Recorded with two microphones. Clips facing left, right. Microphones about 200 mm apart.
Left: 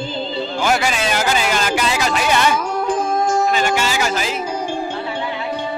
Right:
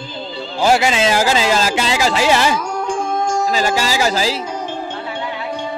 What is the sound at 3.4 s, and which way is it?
Speech, 35° right (ahead or behind).